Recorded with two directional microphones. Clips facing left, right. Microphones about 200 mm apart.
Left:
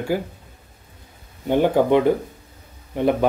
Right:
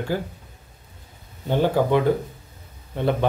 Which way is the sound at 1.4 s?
15° left (ahead or behind).